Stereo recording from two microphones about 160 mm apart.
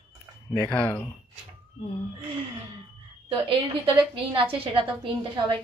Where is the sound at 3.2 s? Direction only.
35° right (ahead or behind).